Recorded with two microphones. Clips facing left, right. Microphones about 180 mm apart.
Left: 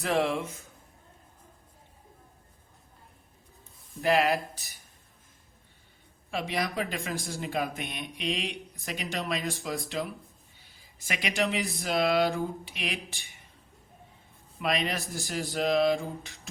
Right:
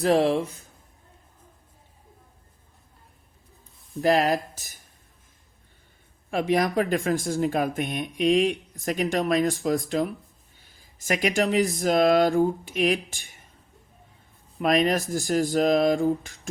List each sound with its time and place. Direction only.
0.0 s speech: 35° right (ahead or behind)
4.0 s speech: 40° right (ahead or behind)
6.3 s speech: 50° right (ahead or behind)
14.6 s speech: 45° right (ahead or behind)